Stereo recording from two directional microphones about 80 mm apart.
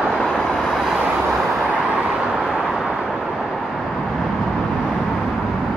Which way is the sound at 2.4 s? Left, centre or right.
Centre.